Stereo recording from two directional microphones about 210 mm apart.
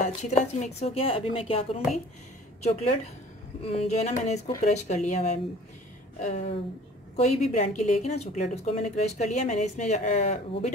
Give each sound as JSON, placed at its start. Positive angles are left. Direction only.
{"t": 0.3, "sound": "a woman's voice", "side_deg": 35}